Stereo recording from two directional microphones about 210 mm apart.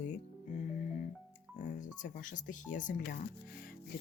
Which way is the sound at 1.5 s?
35° left (ahead or behind).